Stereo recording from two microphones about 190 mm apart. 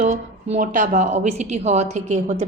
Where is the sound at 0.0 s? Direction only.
35° right (ahead or behind).